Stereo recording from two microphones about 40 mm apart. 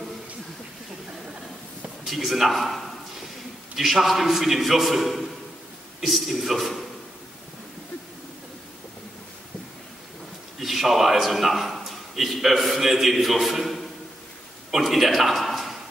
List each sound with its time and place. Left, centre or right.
2.0 s a man's voice: centre
10.6 s a man's voice: centre
14.7 s a sound: centre